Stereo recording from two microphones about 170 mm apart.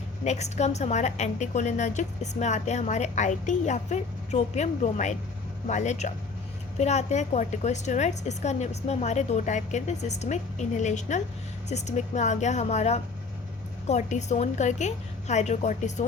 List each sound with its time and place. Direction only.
0.3 s a woman's voice: 40° left (ahead or behind)